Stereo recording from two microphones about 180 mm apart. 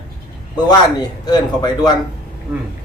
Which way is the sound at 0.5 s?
20° left (ahead or behind).